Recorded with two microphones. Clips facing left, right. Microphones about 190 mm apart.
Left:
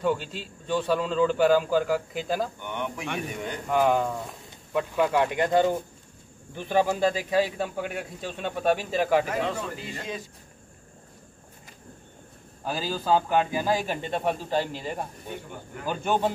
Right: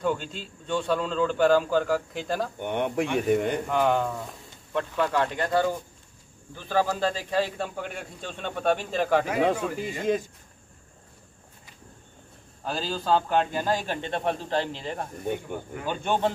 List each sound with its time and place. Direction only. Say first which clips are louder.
0.0 s a man's voice: left 1 dB; 5° left (ahead or behind)
2.6 s speech: right 7 dB; 55° right (ahead or behind)
3.6 s a man's voice: left 1 dB; 5° left (ahead or behind)
9.4 s a man's voice: right 5 dB; 50° right (ahead or behind)
12.6 s a man's voice: left 1 dB; 5° left (ahead or behind)